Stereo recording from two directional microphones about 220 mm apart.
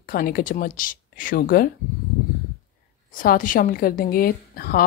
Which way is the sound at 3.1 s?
40° left (ahead or behind).